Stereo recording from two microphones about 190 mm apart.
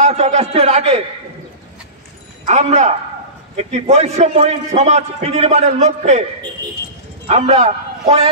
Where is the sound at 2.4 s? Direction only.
35° right (ahead or behind).